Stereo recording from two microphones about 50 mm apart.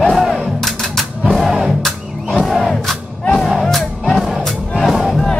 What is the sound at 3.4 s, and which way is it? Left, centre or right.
Music, centre.